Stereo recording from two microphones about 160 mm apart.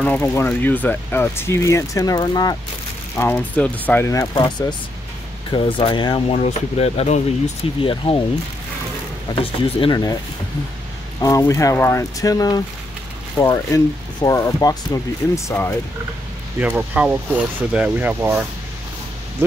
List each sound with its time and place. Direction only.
0.0 s speech: 10° left (ahead or behind)
3.2 s speech: 10° left (ahead or behind); by 7.9 s 40° left (ahead or behind)
9.3 s speech: 35° left (ahead or behind)
11.1 s speech: 20° left (ahead or behind)
16.5 s speech: 10° right (ahead or behind)